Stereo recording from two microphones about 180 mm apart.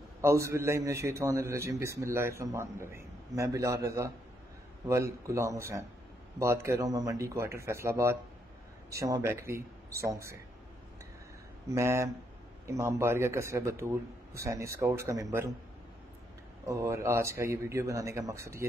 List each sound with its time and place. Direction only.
0.2 s a man's voice: 15° right (ahead or behind)
11.7 s a man's voice: 15° right (ahead or behind)
16.6 s a man's voice: 15° right (ahead or behind)